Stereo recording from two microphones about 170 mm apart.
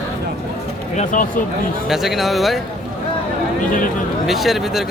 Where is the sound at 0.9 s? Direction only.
45° left (ahead or behind).